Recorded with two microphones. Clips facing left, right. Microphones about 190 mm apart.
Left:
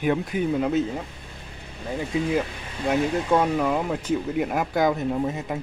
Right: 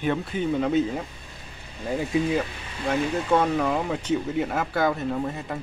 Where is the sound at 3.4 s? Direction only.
10° left (ahead or behind).